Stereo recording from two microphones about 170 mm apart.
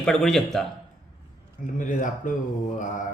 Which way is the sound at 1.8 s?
50° left (ahead or behind).